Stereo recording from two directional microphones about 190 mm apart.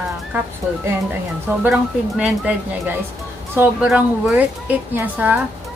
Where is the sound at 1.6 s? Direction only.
5° right (ahead or behind).